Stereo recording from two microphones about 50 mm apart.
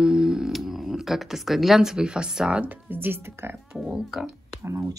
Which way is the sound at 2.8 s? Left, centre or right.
Right.